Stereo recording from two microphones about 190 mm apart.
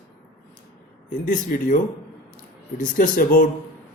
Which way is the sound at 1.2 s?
45° left (ahead or behind).